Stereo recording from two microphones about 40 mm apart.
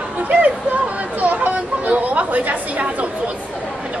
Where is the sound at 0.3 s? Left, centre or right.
Right.